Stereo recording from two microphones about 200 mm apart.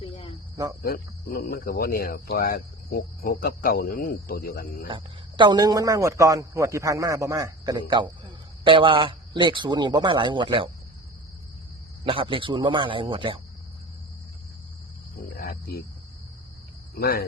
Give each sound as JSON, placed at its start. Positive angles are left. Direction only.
{"t": 0.0, "sound": "cricket", "side_deg": 25}
{"t": 0.8, "sound": "speech", "side_deg": 50}
{"t": 4.9, "sound": "a man's voice", "side_deg": -25}
{"t": 12.0, "sound": "a man's voice", "side_deg": -25}
{"t": 15.4, "sound": "cricket", "side_deg": 50}
{"t": 17.0, "sound": "speech", "side_deg": 50}